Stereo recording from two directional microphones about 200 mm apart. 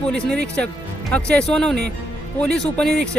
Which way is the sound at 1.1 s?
5° left (ahead or behind).